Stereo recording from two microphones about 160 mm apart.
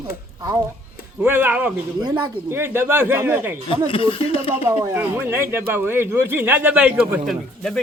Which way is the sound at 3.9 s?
35° left (ahead or behind).